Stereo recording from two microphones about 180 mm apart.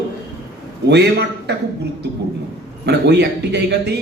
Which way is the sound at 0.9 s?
70° right (ahead or behind).